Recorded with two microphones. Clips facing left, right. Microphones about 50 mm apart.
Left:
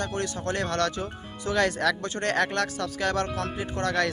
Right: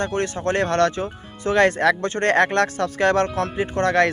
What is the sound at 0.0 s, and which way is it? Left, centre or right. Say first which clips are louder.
Speech: right 7 dB; right.